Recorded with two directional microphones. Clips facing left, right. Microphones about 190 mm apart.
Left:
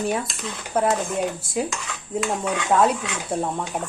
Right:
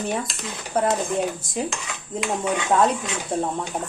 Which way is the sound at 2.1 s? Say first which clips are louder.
Left 1 dB; 5° right (ahead or behind).